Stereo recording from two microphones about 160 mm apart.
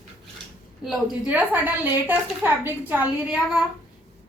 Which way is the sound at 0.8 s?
5° right (ahead or behind).